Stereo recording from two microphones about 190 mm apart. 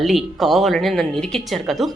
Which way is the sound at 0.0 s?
Centre (ahead or behind).